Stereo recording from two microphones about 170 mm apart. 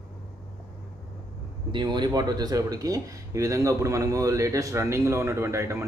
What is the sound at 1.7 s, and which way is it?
Speech, 25° right (ahead or behind).